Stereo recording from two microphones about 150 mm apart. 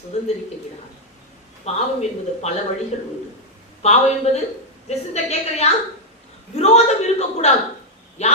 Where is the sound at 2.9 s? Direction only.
50° left (ahead or behind).